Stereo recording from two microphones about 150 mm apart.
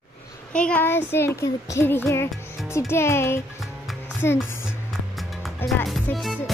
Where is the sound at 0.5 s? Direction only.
5° left (ahead or behind).